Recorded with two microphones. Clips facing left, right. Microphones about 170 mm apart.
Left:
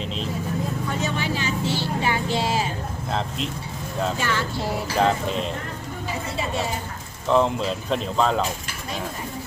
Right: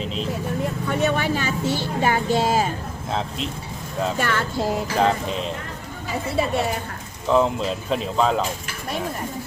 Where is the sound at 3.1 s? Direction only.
Centre (ahead or behind).